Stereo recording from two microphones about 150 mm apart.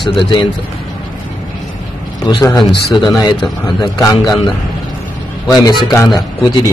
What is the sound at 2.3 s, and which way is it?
Speech, 25° left (ahead or behind).